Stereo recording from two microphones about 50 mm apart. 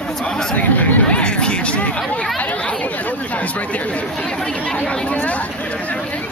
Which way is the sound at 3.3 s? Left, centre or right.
Left.